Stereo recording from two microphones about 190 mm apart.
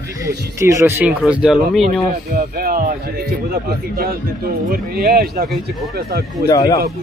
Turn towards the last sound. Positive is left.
turn(degrees=20)  # may be behind; listen again after turning